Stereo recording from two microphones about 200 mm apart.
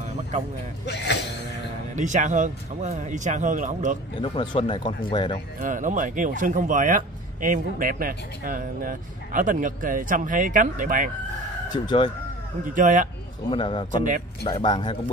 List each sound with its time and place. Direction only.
0.8 s speech: 60° left (ahead or behind)
2.0 s speech: 40° right (ahead or behind)
4.2 s speech: 25° left (ahead or behind)
5.6 s speech: 40° right (ahead or behind)
11.7 s speech: 25° left (ahead or behind)
12.6 s speech: 40° right (ahead or behind)
13.5 s speech: 25° left (ahead or behind)